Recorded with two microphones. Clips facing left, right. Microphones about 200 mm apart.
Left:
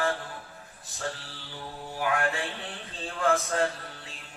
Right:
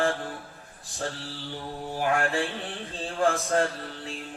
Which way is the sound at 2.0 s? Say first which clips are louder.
Right 3 dB; 35° right (ahead or behind).